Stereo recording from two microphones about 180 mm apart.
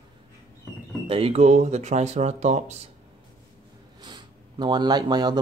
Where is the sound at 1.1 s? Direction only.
35° right (ahead or behind).